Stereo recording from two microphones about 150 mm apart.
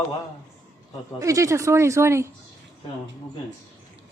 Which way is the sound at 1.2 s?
20° right (ahead or behind).